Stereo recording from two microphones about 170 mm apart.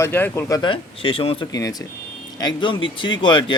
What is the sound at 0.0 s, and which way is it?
Speech, 15° left (ahead or behind).